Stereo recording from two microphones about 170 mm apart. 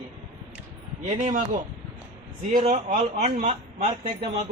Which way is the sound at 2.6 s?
40° right (ahead or behind).